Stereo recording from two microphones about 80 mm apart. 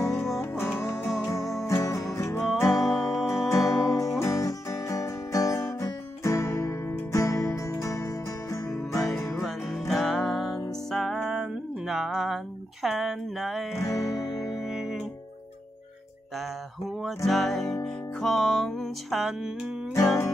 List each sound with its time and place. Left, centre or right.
0.4 s music: left
4.2 s guitar: left
6.2 s music: left
9.2 s music: centre
17.3 s music: centre
19.9 s music: left